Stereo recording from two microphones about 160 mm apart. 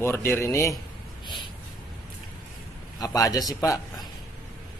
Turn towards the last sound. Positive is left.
turn(degrees=20)  # may be behind; listen again after turning